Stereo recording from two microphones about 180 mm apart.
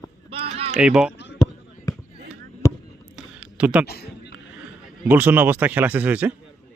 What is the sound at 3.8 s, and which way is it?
Speech, 60° left (ahead or behind).